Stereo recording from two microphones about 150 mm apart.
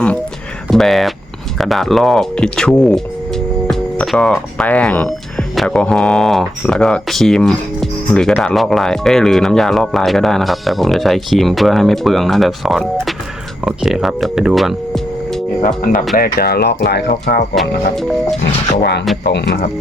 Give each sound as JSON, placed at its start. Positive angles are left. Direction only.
{"t": 0.7, "sound": "speech", "side_deg": 0}
{"t": 15.6, "sound": "speech", "side_deg": 60}
{"t": 16.1, "sound": "speech", "side_deg": 85}
{"t": 17.5, "sound": "speech", "side_deg": 0}